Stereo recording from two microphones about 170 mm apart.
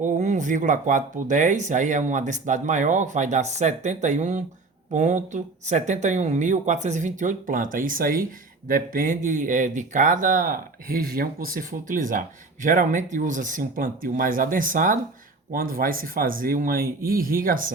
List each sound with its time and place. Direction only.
0.0 s speech: 45° right (ahead or behind)